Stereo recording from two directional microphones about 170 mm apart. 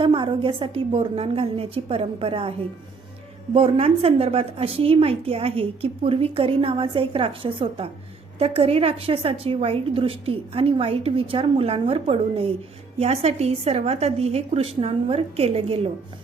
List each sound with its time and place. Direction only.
0.0 s a woman's voice: 30° right (ahead or behind)
3.5 s a woman's voice: 35° right (ahead or behind)